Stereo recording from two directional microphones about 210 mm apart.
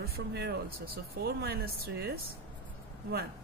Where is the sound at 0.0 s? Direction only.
50° right (ahead or behind).